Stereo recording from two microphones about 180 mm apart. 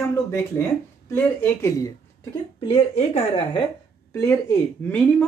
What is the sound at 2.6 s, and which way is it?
Speech, 30° left (ahead or behind).